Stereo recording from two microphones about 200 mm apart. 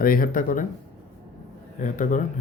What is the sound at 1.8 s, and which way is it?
Speech, 40° left (ahead or behind).